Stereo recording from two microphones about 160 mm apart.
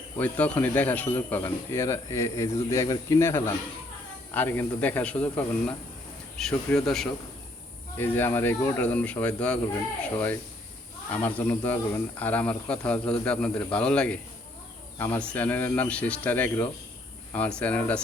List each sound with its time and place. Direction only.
0.2 s speech: 10° left (ahead or behind)
11.1 s speech: 10° left (ahead or behind)